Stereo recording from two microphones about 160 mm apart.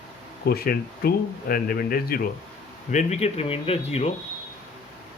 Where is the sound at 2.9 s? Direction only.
45° left (ahead or behind).